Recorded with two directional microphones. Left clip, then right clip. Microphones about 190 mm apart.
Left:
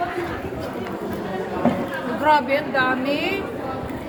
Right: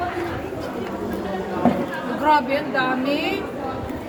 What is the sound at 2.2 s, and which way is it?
A woman's voice, 25° left (ahead or behind).